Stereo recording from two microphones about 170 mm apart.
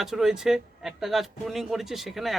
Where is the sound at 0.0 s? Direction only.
5° right (ahead or behind).